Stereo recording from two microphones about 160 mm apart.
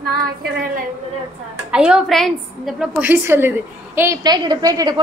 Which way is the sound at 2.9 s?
15° right (ahead or behind).